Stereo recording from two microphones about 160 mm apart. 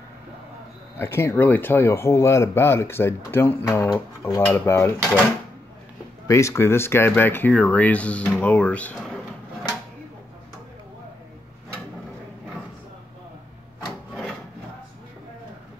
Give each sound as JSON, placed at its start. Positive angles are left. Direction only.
{"t": 0.9, "sound": "speech", "side_deg": 15}
{"t": 6.2, "sound": "speech", "side_deg": 20}